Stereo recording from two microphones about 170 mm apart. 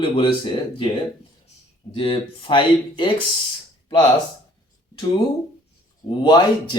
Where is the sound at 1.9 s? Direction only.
30° left (ahead or behind).